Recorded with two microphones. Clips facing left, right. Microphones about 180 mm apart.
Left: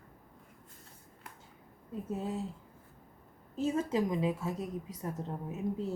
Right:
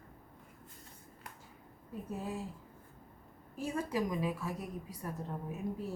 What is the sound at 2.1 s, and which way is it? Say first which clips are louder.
Speech: left 4 dB; 25° left (ahead or behind).